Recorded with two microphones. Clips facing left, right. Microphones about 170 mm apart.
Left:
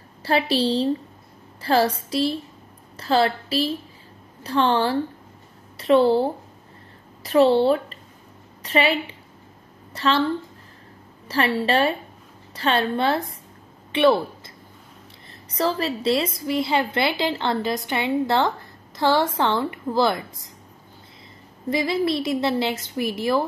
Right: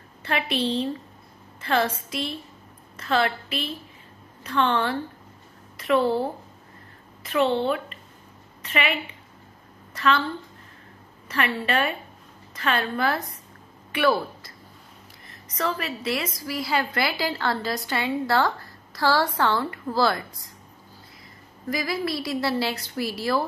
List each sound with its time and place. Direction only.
0.2 s a woman's voice: 35° left (ahead or behind)
11.2 s a woman's voice: 35° left (ahead or behind)
21.6 s a woman's voice: 25° left (ahead or behind)